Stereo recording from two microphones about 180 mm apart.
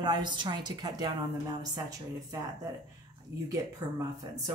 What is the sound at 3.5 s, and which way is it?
Speech, 20° right (ahead or behind).